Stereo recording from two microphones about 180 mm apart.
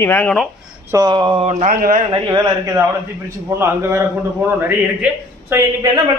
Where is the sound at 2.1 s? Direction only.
20° right (ahead or behind).